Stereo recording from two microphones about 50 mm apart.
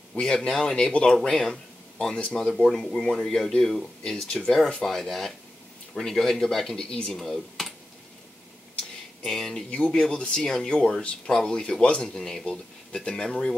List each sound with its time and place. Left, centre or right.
0.2 s speech: centre
0.8 s speech: centre
7.1 s speech: centre
9.2 s speech: centre
9.7 s speech: left
9.9 s speech: centre